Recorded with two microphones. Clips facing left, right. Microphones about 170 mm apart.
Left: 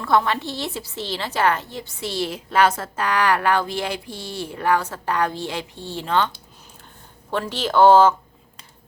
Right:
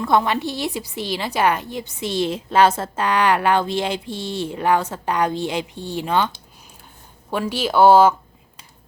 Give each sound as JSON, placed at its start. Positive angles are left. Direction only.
{"t": 0.0, "sound": "a woman's voice", "side_deg": -20}